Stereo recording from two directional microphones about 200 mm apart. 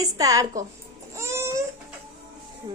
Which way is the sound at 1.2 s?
15° right (ahead or behind).